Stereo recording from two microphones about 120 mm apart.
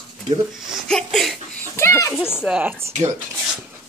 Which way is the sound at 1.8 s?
20° left (ahead or behind).